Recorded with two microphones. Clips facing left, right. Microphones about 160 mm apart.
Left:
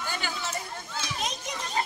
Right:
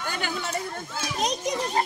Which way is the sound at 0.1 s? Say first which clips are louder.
Right 5 dB; 55° right (ahead or behind).